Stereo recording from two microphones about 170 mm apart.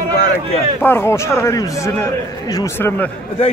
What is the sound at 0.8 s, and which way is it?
A man's voice, 10° left (ahead or behind).